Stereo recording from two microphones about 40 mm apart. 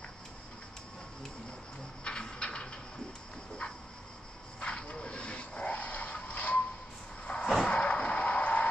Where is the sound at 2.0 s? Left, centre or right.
Left.